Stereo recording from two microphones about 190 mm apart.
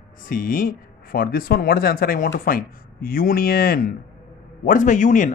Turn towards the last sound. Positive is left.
turn(degrees=40)  # may be behind; listen again after turning